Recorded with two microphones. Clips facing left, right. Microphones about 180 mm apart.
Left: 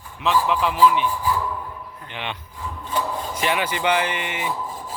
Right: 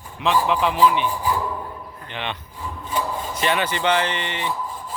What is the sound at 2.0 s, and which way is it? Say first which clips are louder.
Speech: right 2 dB; 10° left (ahead or behind).